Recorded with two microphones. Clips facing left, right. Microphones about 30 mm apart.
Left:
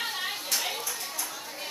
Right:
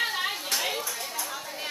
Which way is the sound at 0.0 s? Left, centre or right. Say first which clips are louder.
Right 4 dB; centre.